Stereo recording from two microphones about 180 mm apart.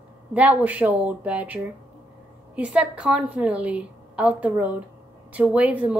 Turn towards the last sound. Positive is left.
turn(degrees=-5)  # may be behind; listen again after turning